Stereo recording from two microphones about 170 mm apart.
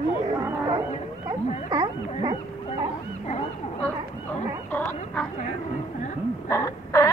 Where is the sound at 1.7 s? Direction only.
20° right (ahead or behind).